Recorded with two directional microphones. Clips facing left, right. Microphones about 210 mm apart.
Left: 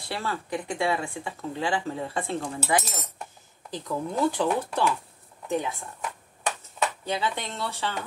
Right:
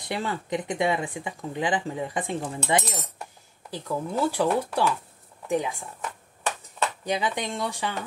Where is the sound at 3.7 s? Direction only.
5° right (ahead or behind).